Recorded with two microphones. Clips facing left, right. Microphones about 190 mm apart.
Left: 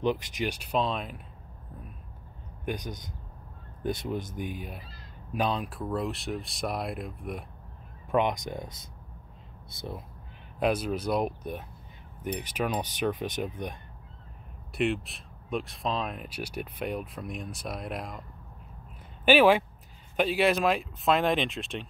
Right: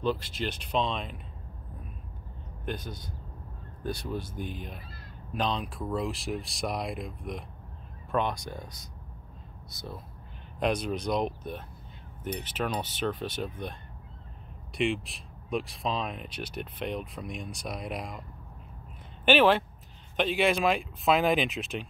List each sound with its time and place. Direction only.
0.0 s speech: 15° left (ahead or behind)
2.6 s speech: 15° left (ahead or behind)
8.1 s speech: 15° left (ahead or behind)
10.6 s speech: 5° left (ahead or behind)
14.7 s speech: centre (ahead or behind)
19.2 s speech: 10° left (ahead or behind)